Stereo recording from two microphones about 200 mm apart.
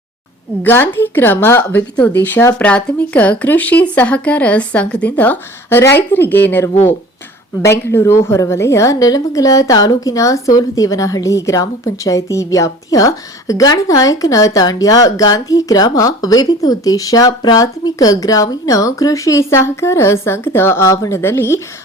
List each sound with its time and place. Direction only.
0.6 s a woman's voice: 10° left (ahead or behind)